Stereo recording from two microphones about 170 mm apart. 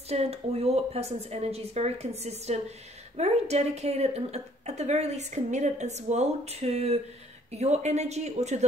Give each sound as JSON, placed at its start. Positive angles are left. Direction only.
{"t": 0.1, "sound": "a woman's voice", "side_deg": -35}